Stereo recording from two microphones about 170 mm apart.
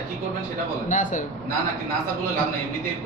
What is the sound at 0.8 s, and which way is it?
Speech, 45° left (ahead or behind).